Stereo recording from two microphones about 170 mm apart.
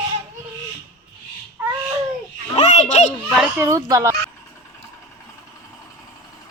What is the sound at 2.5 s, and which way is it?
Children playing, 40° left (ahead or behind).